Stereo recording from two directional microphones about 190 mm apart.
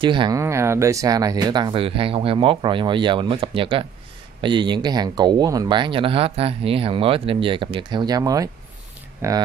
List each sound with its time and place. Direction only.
0.0 s speech: 25° right (ahead or behind)
0.4 s speech: 15° right (ahead or behind)